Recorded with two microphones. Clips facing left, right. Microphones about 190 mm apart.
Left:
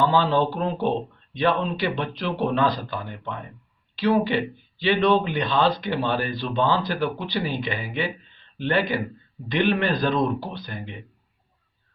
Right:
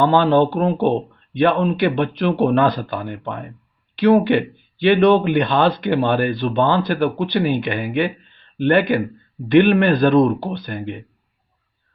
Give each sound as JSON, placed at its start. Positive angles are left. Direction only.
{"t": 0.0, "sound": "speech", "side_deg": -60}